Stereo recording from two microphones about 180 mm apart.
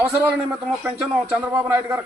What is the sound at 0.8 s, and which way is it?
Speech, 10° right (ahead or behind).